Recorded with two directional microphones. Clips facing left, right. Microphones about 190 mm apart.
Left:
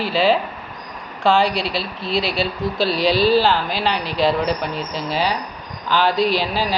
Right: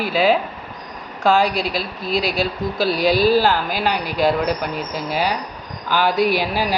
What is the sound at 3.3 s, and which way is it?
Speech, 10° right (ahead or behind).